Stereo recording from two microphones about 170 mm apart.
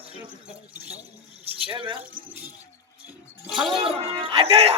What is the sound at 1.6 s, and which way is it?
Speech, 30° right (ahead or behind).